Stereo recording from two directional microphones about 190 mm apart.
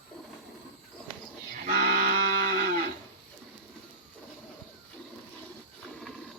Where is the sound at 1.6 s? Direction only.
50° right (ahead or behind).